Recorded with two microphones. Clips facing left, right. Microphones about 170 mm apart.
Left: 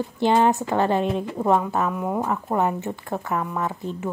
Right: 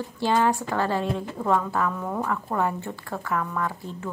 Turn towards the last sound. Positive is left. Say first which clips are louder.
# left 3 dB
turn(degrees=20)  # may be behind; listen again after turning